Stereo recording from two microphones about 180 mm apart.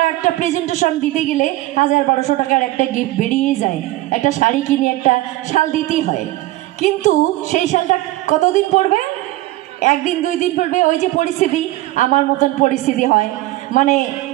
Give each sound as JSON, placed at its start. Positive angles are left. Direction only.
{"t": 0.7, "sound": "a woman's voice", "side_deg": 45}